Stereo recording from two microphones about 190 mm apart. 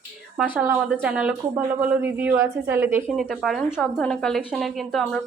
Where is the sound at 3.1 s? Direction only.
Centre (ahead or behind).